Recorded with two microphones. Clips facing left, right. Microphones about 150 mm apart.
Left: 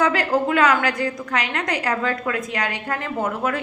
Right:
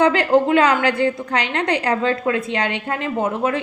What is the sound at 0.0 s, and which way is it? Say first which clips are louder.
A woman's voice: right 5 dB; 30° right (ahead or behind).